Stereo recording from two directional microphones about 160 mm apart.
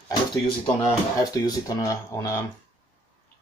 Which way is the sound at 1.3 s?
20° left (ahead or behind).